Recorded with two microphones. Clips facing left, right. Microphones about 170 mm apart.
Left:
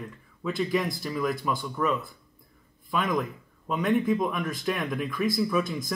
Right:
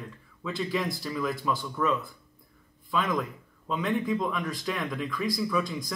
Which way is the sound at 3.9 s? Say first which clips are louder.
Left 4 dB; 15° left (ahead or behind).